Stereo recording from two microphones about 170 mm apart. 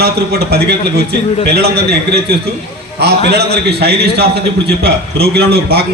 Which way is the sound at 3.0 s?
70° right (ahead or behind).